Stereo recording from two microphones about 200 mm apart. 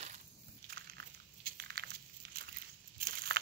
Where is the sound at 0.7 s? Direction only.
50° right (ahead or behind).